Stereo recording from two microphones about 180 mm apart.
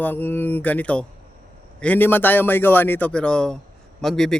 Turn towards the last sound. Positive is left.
turn(degrees=0)  # may be behind; listen again after turning